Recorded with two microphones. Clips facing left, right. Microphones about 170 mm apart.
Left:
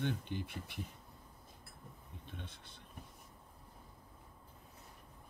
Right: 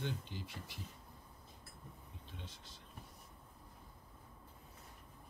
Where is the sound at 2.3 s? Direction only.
60° left (ahead or behind).